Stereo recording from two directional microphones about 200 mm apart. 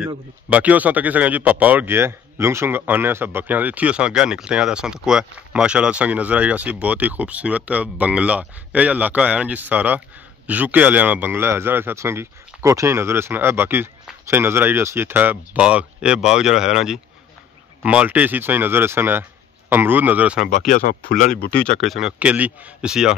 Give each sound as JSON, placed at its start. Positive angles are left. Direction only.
{"t": 0.5, "sound": "speech", "side_deg": -5}
{"t": 20.4, "sound": "speech", "side_deg": 40}
{"t": 21.7, "sound": "speech", "side_deg": 0}